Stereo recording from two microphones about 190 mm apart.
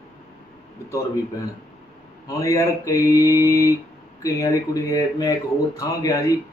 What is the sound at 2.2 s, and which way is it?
A man's voice, 15° left (ahead or behind).